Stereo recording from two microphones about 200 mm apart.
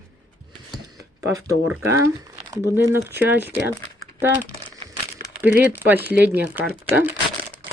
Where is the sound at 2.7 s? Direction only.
10° right (ahead or behind).